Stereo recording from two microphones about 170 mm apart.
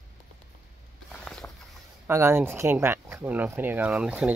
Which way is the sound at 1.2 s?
5° left (ahead or behind).